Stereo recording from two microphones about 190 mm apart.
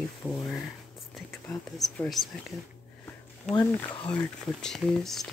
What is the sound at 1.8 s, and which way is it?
Speech, centre (ahead or behind).